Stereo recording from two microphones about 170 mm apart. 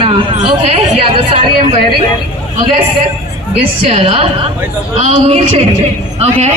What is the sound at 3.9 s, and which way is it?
A man's voice, 35° right (ahead or behind).